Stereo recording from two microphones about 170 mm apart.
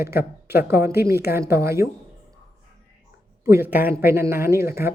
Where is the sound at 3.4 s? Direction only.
15° right (ahead or behind).